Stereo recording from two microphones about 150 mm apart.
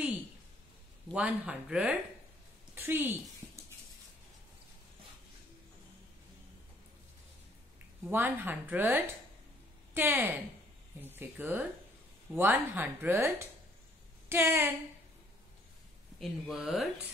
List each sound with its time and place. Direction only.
1.1 s a woman's voice: 10° right (ahead or behind)
8.1 s speech: 10° right (ahead or behind)
14.3 s speech: 15° right (ahead or behind)
16.2 s speech: centre (ahead or behind)